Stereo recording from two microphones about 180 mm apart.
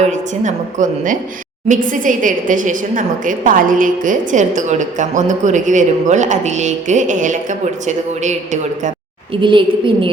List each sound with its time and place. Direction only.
0.1 s a woman's voice: 45° right (ahead or behind)
9.3 s a woman's voice: 25° right (ahead or behind)